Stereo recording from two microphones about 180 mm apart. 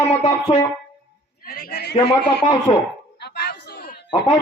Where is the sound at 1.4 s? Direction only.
55° left (ahead or behind).